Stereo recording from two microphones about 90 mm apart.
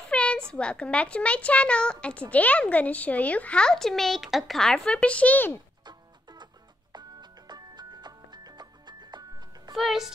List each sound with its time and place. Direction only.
0.1 s a sound: 15° left (ahead or behind)
0.5 s a child's voice: 10° left (ahead or behind)
5.9 s music: 55° right (ahead or behind)
9.8 s speech: 5° right (ahead or behind)